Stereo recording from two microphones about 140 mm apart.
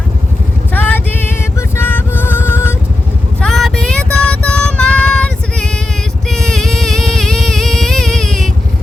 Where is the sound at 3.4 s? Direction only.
Centre (ahead or behind).